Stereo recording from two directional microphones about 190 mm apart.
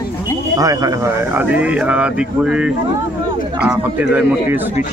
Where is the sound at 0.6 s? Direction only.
20° right (ahead or behind).